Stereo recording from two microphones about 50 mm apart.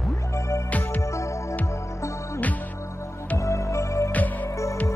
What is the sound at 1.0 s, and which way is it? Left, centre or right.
Music, left.